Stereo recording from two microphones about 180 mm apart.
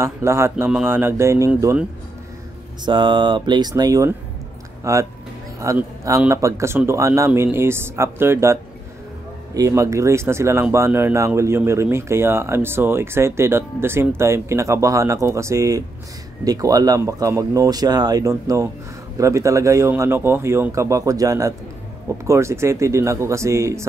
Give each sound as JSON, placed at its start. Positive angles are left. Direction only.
{"t": 0.0, "sound": "speech", "side_deg": -15}
{"t": 2.8, "sound": "speech", "side_deg": -25}